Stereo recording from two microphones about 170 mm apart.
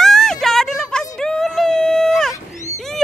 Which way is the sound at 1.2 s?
5° left (ahead or behind).